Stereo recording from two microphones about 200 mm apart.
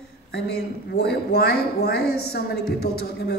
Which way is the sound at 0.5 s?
50° left (ahead or behind).